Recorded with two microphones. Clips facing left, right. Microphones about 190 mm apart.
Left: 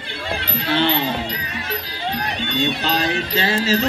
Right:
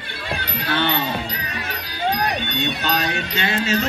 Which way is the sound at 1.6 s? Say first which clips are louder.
Right 4 dB; 30° left (ahead or behind).